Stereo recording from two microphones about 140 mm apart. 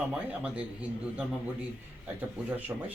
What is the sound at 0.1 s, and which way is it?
Speech, 10° right (ahead or behind).